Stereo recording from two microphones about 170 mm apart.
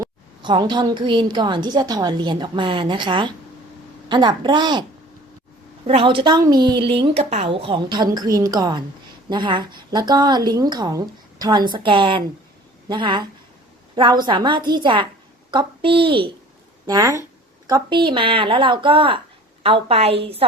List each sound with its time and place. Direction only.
0.0 s a woman's voice: 25° right (ahead or behind)